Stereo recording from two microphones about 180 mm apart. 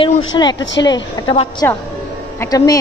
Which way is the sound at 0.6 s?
90° left.